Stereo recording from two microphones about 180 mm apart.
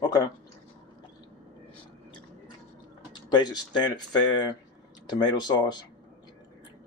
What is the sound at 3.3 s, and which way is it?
Speech, 25° left (ahead or behind).